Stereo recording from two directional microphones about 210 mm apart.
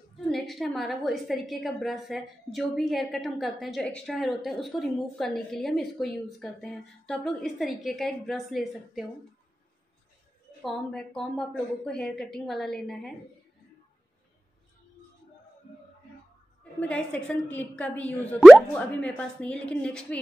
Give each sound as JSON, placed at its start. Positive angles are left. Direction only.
{"t": 0.3, "sound": "a woman's voice", "side_deg": 0}
{"t": 10.6, "sound": "a woman's voice", "side_deg": 0}
{"t": 16.8, "sound": "a woman's voice", "side_deg": 5}